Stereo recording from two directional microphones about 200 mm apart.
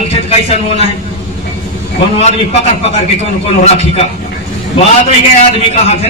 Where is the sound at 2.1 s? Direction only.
30° left (ahead or behind).